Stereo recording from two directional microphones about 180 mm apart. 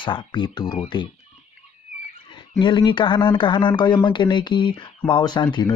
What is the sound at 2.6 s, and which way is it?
Speech, 25° left (ahead or behind).